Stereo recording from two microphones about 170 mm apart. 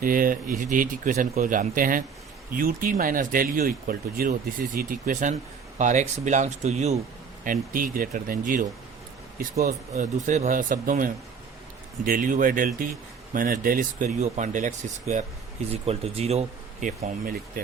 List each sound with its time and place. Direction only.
0.0 s speech: 55° right (ahead or behind)
7.4 s speech: 55° right (ahead or behind)
15.7 s speech: 35° right (ahead or behind)